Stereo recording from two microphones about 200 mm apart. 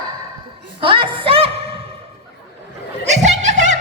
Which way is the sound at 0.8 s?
25° right (ahead or behind).